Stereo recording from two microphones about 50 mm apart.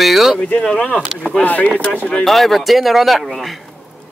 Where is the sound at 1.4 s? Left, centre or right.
Left.